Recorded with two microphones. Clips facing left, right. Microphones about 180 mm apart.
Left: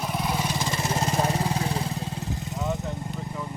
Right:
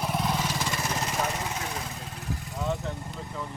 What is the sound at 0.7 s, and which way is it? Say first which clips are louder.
Vehicle: left 4 dB; 30° left (ahead or behind).